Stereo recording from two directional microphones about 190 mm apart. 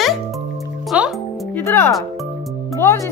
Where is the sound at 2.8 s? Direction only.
10° left (ahead or behind).